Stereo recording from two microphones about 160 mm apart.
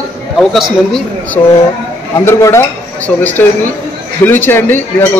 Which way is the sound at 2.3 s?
15° left (ahead or behind).